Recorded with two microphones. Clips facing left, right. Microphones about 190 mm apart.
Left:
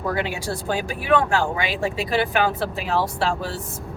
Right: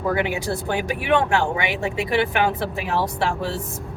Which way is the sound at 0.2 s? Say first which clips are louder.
Right 3 dB; 20° right (ahead or behind).